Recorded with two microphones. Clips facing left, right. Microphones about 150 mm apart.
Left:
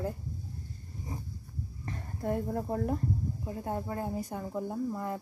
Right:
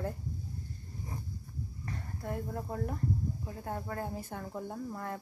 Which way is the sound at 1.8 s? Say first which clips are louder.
Left 6 dB; 25° left (ahead or behind).